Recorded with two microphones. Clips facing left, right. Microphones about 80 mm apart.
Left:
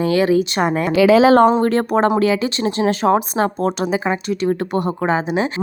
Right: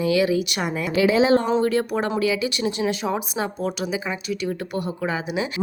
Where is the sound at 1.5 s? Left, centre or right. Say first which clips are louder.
Left 5 dB; left.